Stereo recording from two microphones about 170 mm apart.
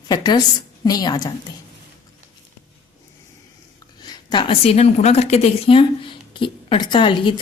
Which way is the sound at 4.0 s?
25° left (ahead or behind).